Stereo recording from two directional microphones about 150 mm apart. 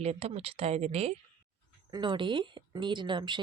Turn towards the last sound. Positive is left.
turn(degrees=-30)  # may be behind; listen again after turning